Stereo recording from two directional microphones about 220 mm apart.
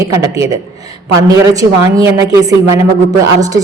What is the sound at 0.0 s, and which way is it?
A woman's voice, 15° right (ahead or behind).